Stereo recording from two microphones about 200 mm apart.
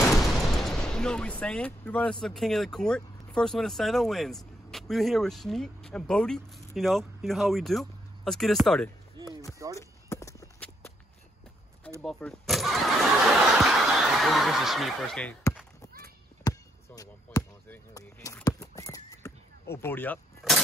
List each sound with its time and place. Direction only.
0.0 s speech: centre (ahead or behind)
9.8 s clip-clop: 15° left (ahead or behind)
12.0 s speech: centre (ahead or behind)
13.6 s snicker: centre (ahead or behind)
16.4 s basketball bounce: 15° left (ahead or behind)
19.7 s speech: 10° left (ahead or behind)